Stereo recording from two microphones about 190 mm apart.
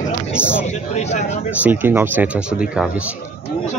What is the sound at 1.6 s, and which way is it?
Speech, 10° right (ahead or behind).